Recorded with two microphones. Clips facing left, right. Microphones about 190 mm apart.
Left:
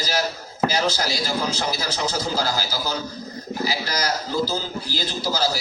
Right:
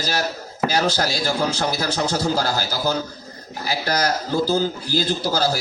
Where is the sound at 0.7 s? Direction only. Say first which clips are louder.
Right 2 dB; 50° right (ahead or behind).